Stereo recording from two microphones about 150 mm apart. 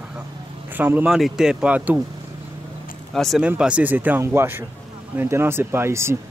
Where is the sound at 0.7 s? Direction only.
10° right (ahead or behind).